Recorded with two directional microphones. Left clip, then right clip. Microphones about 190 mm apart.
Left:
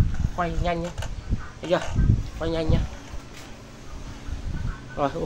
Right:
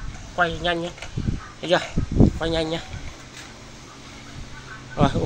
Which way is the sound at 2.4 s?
10° right (ahead or behind).